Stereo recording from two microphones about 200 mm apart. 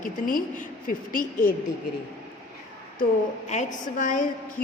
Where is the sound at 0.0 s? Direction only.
45° left (ahead or behind).